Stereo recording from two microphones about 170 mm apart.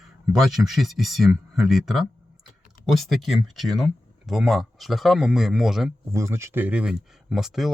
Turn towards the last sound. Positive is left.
turn(degrees=0)  # may be behind; listen again after turning